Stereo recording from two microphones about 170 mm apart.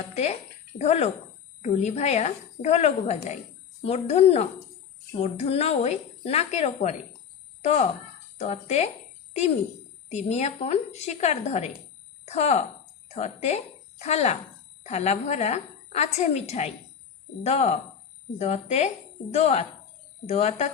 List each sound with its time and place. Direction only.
0.1 s a woman's voice: 40° left (ahead or behind)
10.1 s a woman's voice: 40° left (ahead or behind)